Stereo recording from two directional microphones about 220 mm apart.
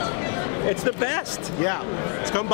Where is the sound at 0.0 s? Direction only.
15° left (ahead or behind).